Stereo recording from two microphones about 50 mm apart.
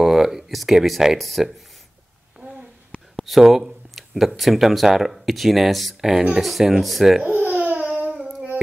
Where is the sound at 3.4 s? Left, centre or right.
Centre.